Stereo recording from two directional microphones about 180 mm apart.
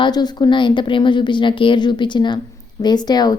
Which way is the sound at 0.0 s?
25° left (ahead or behind).